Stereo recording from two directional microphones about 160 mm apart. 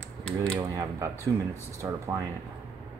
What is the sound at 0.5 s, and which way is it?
Speech, 20° right (ahead or behind).